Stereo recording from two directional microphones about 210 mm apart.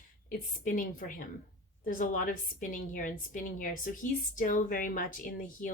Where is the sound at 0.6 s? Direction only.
40° left (ahead or behind).